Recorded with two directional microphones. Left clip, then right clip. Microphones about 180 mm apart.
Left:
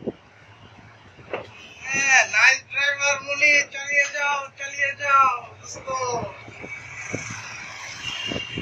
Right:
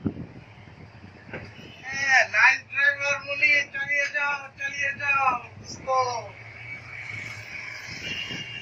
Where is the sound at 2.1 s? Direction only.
25° right (ahead or behind).